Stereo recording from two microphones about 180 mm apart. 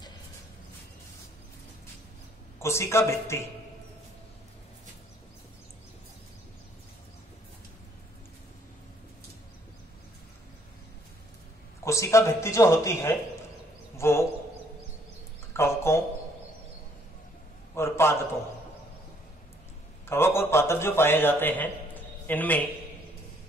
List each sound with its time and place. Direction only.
2.6 s a man's voice: 15° left (ahead or behind)
11.8 s a man's voice: 15° left (ahead or behind)
15.5 s a sound: 15° left (ahead or behind)
17.7 s a man's voice: 15° left (ahead or behind)
20.1 s a man's voice: 15° left (ahead or behind)